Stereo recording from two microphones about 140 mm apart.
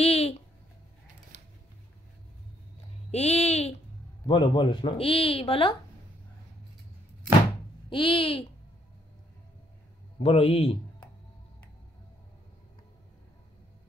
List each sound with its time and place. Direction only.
0.0 s a sound: 45° left (ahead or behind)
3.1 s speech: 50° left (ahead or behind)
4.3 s speech: 35° left (ahead or behind)
7.9 s speech: 40° left (ahead or behind)
10.2 s speech: 45° left (ahead or behind)